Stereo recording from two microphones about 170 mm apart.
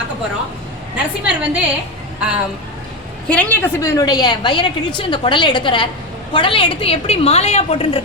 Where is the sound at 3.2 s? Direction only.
10° left (ahead or behind).